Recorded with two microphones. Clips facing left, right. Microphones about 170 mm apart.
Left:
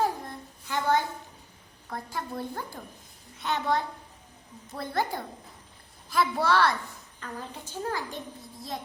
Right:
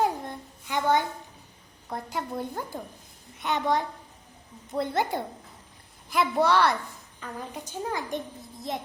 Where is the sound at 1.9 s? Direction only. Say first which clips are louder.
Right 3 dB; 20° right (ahead or behind).